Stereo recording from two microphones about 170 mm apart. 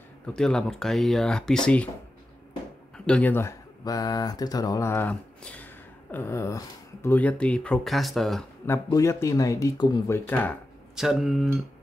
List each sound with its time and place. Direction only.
0.3 s speech: 5° left (ahead or behind)
3.1 s speech: 10° left (ahead or behind)
8.6 s speech: 15° left (ahead or behind)
11.0 s speech: centre (ahead or behind)